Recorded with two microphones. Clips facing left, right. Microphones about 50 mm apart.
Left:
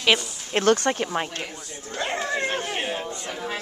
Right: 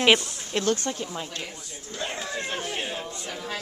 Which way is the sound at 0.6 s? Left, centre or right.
Left.